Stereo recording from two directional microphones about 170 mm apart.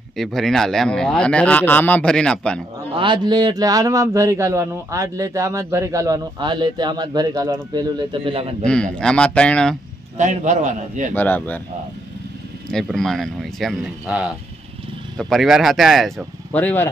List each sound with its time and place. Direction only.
0.2 s speech: centre (ahead or behind)
2.9 s a man's voice: 30° right (ahead or behind)
8.1 s a man's voice: 30° right (ahead or behind)
8.6 s speech: 5° left (ahead or behind)
10.1 s a man's voice: 45° right (ahead or behind)
11.1 s speech: 10° left (ahead or behind)
12.7 s speech: 5° left (ahead or behind)